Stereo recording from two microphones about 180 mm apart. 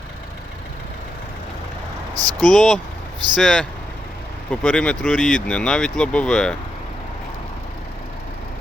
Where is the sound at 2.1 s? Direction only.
20° right (ahead or behind).